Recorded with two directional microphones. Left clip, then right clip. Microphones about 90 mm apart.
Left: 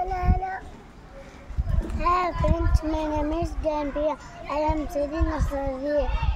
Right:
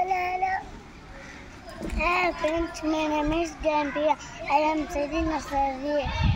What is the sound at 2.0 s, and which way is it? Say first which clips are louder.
A child's voice: left 1 dB; 50° left (ahead or behind).